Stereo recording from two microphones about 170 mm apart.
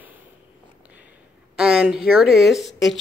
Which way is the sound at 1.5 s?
5° right (ahead or behind).